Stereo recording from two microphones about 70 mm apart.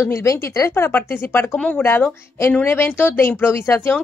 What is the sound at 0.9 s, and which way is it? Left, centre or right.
Speech, left.